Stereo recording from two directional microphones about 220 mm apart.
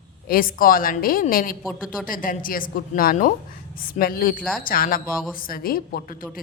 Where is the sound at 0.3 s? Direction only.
40° left (ahead or behind).